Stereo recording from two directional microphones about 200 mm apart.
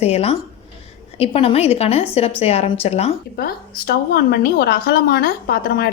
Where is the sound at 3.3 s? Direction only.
50° left (ahead or behind).